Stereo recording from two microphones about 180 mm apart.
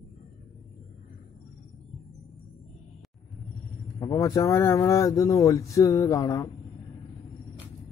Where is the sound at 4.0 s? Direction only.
20° left (ahead or behind).